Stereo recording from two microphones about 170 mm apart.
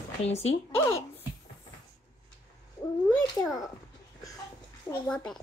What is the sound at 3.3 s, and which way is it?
Speech, 20° left (ahead or behind).